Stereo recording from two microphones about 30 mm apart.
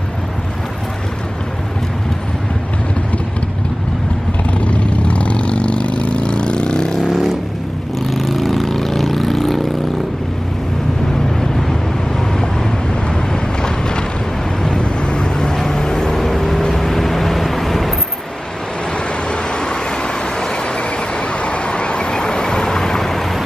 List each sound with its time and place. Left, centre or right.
4.6 s vehicle: left
7.0 s vehicle: centre
11.3 s vehicle: centre
13.3 s vehicle: left; by 17.9 s centre
18.9 s vehicle: left
20.6 s vehicle: left; by 23.4 s centre